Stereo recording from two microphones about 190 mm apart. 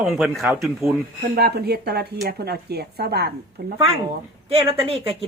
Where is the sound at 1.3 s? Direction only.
55° right (ahead or behind).